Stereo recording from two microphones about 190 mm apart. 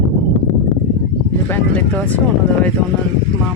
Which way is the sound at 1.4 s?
10° left (ahead or behind).